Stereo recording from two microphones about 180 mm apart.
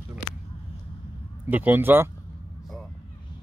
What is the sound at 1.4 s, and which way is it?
Speech, 10° right (ahead or behind).